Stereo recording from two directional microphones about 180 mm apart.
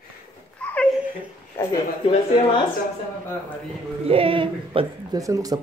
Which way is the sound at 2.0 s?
30° left (ahead or behind).